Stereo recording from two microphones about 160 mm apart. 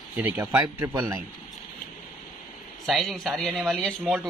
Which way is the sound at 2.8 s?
Centre (ahead or behind).